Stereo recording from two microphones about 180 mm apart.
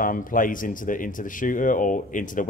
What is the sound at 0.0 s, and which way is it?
Speech, 50° left (ahead or behind).